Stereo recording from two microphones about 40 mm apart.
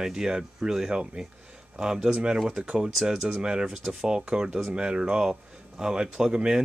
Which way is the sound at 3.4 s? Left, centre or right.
Centre.